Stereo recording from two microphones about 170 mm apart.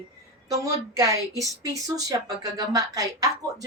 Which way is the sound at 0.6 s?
20° right (ahead or behind).